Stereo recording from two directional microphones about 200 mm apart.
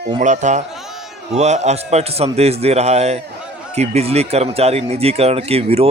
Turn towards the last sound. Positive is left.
turn(degrees=-30)  # may be behind; listen again after turning